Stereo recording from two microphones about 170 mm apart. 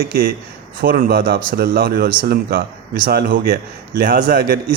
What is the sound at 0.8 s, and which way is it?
Speech, 60° right (ahead or behind).